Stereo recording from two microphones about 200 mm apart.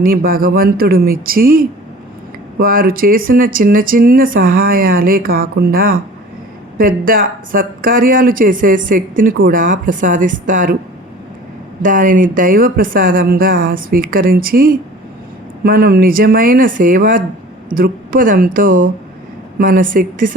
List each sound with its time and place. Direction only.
0.0 s a woman's voice: 45° right (ahead or behind)
11.8 s a woman's voice: 40° right (ahead or behind)